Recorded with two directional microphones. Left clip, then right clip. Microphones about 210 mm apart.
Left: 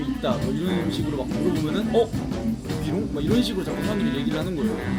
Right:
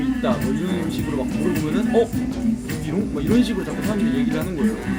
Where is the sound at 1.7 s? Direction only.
15° left (ahead or behind).